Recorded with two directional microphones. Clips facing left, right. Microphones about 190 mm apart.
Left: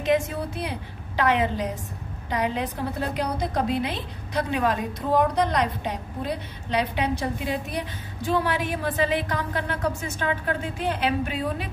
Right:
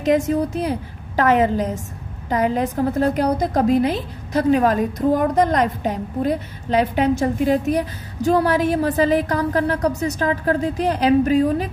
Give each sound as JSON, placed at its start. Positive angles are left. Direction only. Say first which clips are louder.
{"t": 0.0, "sound": "a woman's voice", "louder": "right 6 dB", "side_deg": -40}